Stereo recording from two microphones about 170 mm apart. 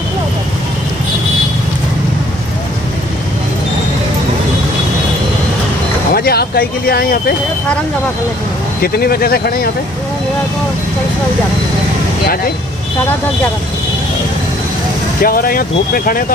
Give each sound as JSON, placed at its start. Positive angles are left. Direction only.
{"t": 6.1, "sound": "speech", "side_deg": 65}
{"t": 8.8, "sound": "speech", "side_deg": 65}
{"t": 15.2, "sound": "speech", "side_deg": 60}